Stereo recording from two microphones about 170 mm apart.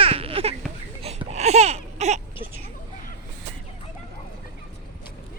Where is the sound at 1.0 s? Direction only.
40° right (ahead or behind).